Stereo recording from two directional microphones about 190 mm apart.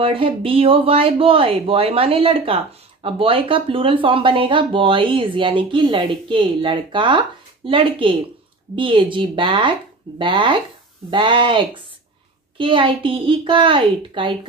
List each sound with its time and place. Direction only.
0.0 s speech: 30° right (ahead or behind)